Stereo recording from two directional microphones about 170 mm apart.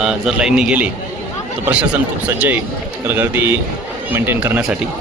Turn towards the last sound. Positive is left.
turn(degrees=-5)  # may be behind; listen again after turning